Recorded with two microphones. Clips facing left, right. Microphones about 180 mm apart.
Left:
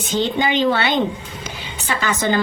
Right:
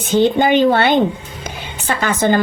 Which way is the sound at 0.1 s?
55° right (ahead or behind).